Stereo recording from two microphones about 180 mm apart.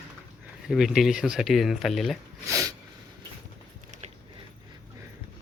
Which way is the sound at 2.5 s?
15° right (ahead or behind).